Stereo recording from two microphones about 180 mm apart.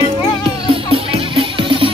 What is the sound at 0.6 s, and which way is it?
Music, 30° right (ahead or behind).